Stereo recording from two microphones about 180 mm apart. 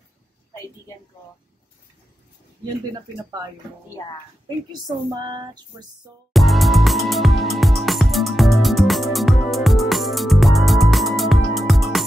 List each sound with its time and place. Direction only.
2.9 s speech: 20° right (ahead or behind)
4.8 s speech: 25° right (ahead or behind)
6.3 s music: centre (ahead or behind)